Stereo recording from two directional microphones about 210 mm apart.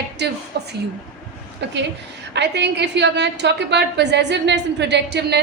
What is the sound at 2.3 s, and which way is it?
A woman's voice, 55° right (ahead or behind).